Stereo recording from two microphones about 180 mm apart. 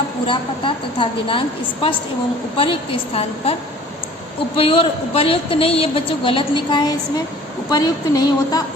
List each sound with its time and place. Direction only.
0.3 s a woman's voice: 30° left (ahead or behind)
3.1 s a woman's voice: 35° left (ahead or behind)
4.5 s a woman's voice: 30° left (ahead or behind)